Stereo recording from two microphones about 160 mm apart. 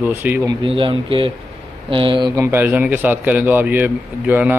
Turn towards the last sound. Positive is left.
turn(degrees=-10)  # may be behind; listen again after turning